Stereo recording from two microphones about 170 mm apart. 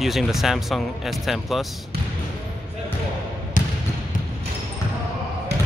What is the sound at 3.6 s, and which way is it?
Basketball bounce, 50° left (ahead or behind).